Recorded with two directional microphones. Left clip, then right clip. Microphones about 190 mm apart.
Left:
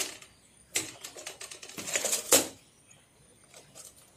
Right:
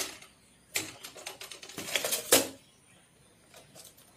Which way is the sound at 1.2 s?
Centre (ahead or behind).